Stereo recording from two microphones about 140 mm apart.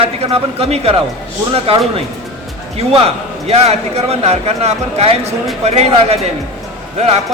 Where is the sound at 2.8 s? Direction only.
45° right (ahead or behind).